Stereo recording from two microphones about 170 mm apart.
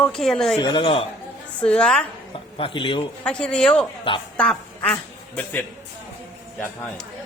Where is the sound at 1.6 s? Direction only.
5° left (ahead or behind).